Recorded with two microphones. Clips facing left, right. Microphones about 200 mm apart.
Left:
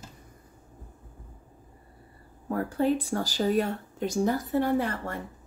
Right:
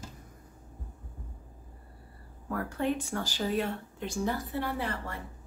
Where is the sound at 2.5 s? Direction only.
30° left (ahead or behind).